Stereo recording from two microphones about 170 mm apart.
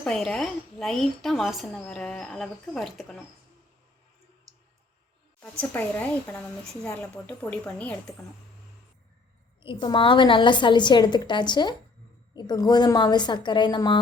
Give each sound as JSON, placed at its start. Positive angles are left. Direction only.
{"t": 0.0, "sound": "a woman's voice", "side_deg": 5}
{"t": 5.4, "sound": "speech", "side_deg": 10}
{"t": 9.6, "sound": "a woman's voice", "side_deg": 30}